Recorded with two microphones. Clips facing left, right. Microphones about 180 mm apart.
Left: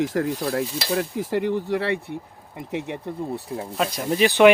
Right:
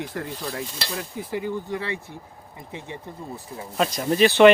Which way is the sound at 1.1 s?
80° left.